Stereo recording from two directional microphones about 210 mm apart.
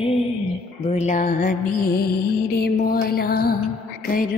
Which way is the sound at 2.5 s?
45° left (ahead or behind).